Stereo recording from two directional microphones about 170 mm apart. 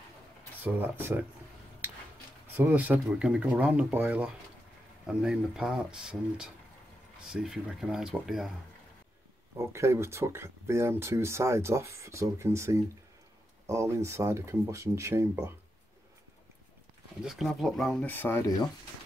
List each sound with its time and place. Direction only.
0.6 s speech: 10° right (ahead or behind)
2.5 s speech: 10° right (ahead or behind)
9.6 s speech: 15° right (ahead or behind)
17.2 s speech: centre (ahead or behind)